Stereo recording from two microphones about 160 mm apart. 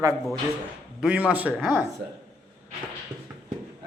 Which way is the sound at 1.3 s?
10° right (ahead or behind).